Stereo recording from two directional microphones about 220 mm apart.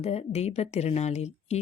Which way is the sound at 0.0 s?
30° left (ahead or behind).